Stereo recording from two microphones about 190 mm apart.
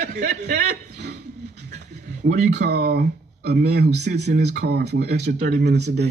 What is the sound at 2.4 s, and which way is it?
Speech, 60° right (ahead or behind).